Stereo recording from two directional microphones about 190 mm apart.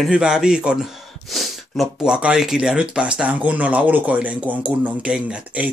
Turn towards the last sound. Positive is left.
turn(degrees=-5)  # may be behind; listen again after turning